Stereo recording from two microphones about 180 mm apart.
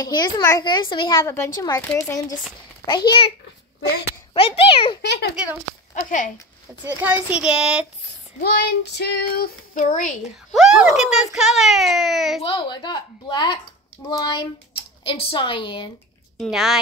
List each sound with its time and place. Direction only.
0.0 s a child's voice: 20° left (ahead or behind)
5.0 s a child's voice: 70° left (ahead or behind)
5.9 s speech: 45° left (ahead or behind)
6.8 s a child's voice: 10° right (ahead or behind)
8.4 s child singing: 65° left (ahead or behind); by 10.1 s 45° left (ahead or behind)
10.2 s a child's voice: centre (ahead or behind)
12.4 s speech: 30° left (ahead or behind)
16.3 s a child's voice: centre (ahead or behind)